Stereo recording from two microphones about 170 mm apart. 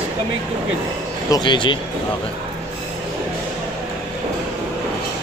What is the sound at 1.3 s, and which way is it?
Speech, 25° left (ahead or behind).